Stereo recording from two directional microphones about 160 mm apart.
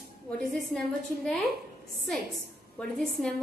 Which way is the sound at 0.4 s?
5° left (ahead or behind).